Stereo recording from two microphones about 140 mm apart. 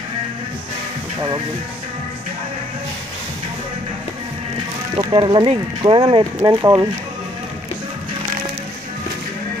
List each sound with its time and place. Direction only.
4.9 s speech: 35° right (ahead or behind)